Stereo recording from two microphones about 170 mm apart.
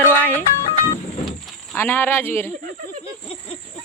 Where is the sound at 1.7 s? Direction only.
10° left (ahead or behind).